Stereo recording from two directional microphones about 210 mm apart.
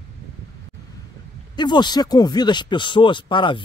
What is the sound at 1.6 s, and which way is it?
Speech, 20° left (ahead or behind).